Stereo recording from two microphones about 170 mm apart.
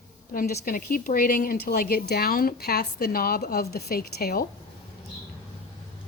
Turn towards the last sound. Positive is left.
turn(degrees=65)  # may be behind; listen again after turning